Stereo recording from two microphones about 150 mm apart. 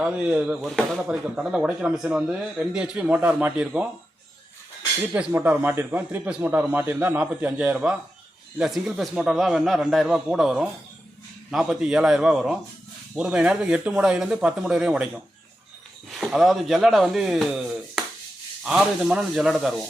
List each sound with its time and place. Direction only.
0.0 s speech: 10° right (ahead or behind)
5.1 s a man's voice: 10° right (ahead or behind)